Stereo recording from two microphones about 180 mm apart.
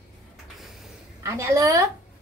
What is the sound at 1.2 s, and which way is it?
Speech, 20° right (ahead or behind).